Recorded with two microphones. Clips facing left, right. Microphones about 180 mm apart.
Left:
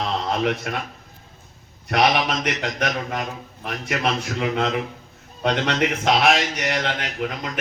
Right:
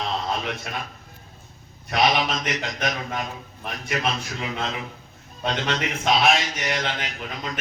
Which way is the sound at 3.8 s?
65° left (ahead or behind).